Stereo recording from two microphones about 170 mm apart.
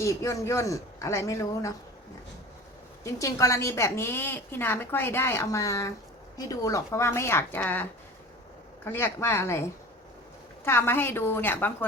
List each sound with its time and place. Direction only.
0.0 s a woman's voice: 20° left (ahead or behind)
3.0 s a woman's voice: 20° left (ahead or behind)
10.7 s a woman's voice: 15° left (ahead or behind)